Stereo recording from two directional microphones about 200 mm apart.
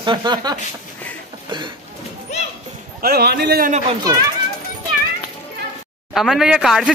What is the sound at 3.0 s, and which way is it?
Speech, 50° right (ahead or behind).